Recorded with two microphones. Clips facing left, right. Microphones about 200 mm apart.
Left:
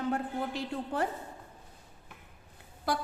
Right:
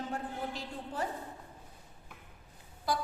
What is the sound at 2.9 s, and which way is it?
Speech, 60° left (ahead or behind).